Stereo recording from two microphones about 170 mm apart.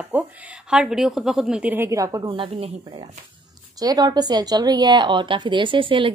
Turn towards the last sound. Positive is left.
turn(degrees=-30)  # may be behind; listen again after turning